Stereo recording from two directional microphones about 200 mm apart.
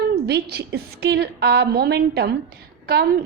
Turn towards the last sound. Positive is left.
turn(degrees=-50)  # may be behind; listen again after turning